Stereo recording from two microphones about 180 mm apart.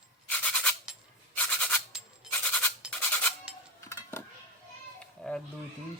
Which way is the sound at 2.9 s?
10° left (ahead or behind).